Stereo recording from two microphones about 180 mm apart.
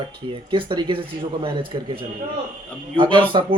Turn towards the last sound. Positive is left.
turn(degrees=-30)  # may be behind; listen again after turning